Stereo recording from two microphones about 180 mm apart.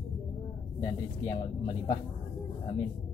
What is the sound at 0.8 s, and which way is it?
Speech, 30° left (ahead or behind).